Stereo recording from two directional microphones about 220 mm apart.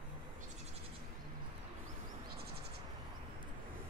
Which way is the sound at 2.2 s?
45° right (ahead or behind).